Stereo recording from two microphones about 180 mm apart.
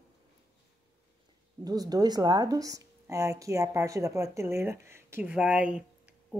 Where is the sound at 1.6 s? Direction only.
20° right (ahead or behind).